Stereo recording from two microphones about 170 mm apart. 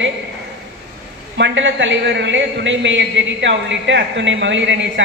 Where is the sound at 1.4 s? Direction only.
90° right.